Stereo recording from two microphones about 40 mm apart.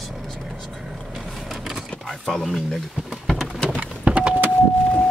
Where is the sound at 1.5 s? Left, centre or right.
Centre.